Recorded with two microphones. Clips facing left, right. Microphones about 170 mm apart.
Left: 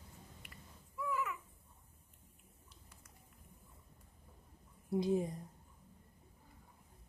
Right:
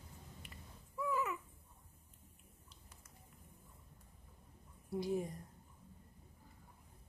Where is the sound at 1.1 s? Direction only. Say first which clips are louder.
Right 1 dB; 25° right (ahead or behind).